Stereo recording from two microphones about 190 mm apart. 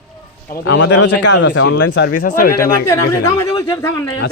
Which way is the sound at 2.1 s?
50° left (ahead or behind).